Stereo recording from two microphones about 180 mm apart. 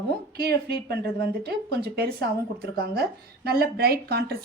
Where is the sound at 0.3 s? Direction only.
60° right (ahead or behind).